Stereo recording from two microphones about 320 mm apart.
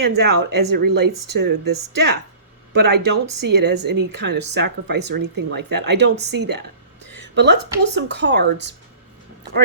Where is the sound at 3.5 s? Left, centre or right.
Right.